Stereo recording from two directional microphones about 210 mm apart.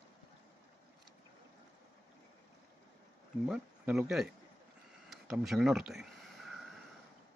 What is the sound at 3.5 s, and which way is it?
Speech, 5° right (ahead or behind).